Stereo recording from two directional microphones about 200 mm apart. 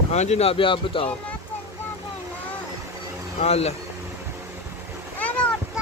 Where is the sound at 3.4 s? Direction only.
30° left (ahead or behind).